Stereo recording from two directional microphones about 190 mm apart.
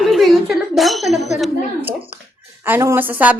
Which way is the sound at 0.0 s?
Centre (ahead or behind).